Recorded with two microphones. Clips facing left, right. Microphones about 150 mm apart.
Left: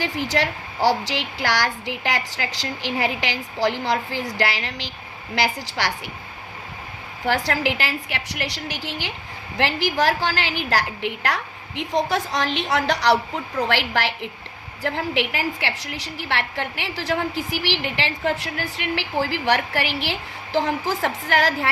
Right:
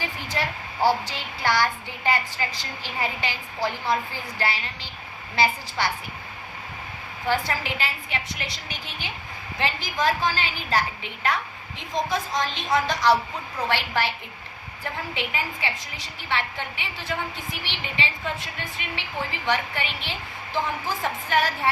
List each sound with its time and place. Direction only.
0.0 s a woman's voice: 90° left
7.3 s a woman's voice: 85° left